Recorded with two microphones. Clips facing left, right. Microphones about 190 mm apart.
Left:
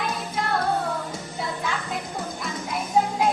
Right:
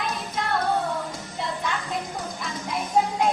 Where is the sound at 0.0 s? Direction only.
Centre (ahead or behind).